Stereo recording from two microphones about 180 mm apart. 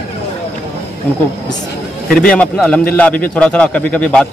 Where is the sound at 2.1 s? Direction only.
5° left (ahead or behind).